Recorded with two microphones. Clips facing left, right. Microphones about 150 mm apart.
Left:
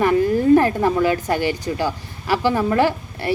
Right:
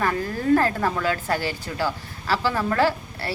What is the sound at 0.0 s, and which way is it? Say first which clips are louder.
A woman's voice: left 8 dB; 15° left (ahead or behind).